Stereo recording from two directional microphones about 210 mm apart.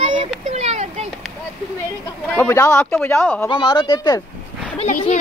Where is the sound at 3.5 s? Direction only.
20° left (ahead or behind).